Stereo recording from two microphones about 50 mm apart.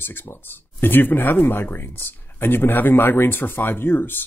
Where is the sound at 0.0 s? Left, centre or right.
Left.